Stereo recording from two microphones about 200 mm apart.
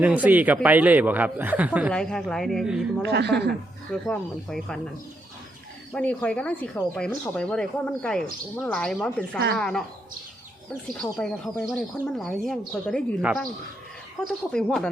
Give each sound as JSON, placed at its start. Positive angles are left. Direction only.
{"t": 0.0, "sound": "speech", "side_deg": -5}
{"t": 1.9, "sound": "speech", "side_deg": 5}
{"t": 3.0, "sound": "a woman's voice", "side_deg": -60}
{"t": 4.0, "sound": "speech", "side_deg": 0}
{"t": 5.9, "sound": "speech", "side_deg": 5}
{"t": 11.2, "sound": "speech", "side_deg": 5}